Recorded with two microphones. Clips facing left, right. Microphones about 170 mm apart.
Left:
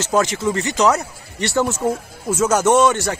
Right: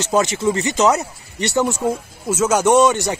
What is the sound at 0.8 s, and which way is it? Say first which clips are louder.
Speech: even; 20° right (ahead or behind).